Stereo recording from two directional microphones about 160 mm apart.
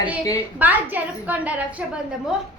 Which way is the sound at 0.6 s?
10° right (ahead or behind).